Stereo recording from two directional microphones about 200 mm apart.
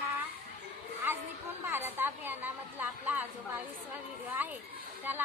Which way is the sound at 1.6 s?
10° right (ahead or behind).